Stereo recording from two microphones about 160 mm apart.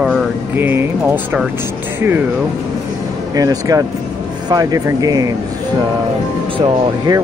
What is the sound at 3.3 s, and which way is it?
Speech, 20° right (ahead or behind).